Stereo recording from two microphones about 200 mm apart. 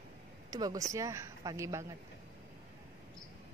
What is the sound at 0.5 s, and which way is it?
A woman's voice, 20° right (ahead or behind).